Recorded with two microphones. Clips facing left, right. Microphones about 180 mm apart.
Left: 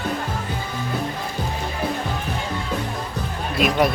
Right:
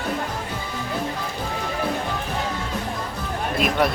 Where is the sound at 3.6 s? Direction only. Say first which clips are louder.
Left 3 dB; centre (ahead or behind).